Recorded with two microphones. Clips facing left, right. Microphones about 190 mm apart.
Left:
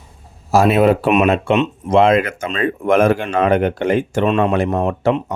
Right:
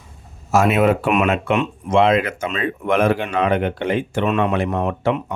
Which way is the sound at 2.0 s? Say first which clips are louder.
Left 3 dB; 45° left (ahead or behind).